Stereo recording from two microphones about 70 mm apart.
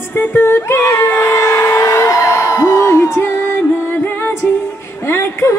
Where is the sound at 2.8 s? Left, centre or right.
Left.